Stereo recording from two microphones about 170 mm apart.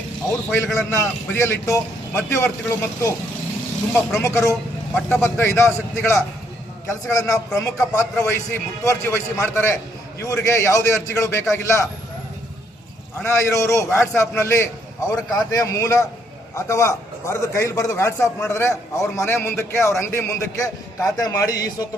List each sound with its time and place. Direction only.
0.8 s a man's voice: 15° left (ahead or behind)
13.2 s a man's voice: 15° left (ahead or behind)